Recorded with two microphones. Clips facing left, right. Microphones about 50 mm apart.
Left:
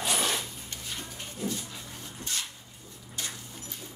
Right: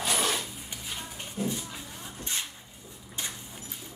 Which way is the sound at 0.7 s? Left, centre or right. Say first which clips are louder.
Right 1 dB; centre.